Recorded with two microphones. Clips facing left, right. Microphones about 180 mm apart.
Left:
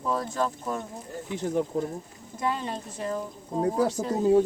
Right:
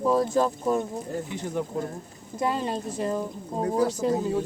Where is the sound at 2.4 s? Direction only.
35° right (ahead or behind).